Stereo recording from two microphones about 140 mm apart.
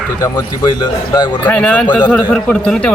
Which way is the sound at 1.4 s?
10° left (ahead or behind).